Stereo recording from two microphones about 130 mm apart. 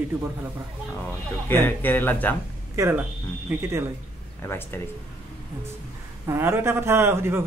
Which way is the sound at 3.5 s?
10° right (ahead or behind).